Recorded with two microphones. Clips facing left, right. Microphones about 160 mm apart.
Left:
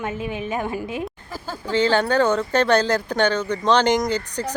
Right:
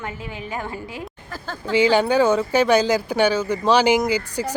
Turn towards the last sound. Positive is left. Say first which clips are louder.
# right 2 dB
turn(degrees=-10)  # may be behind; listen again after turning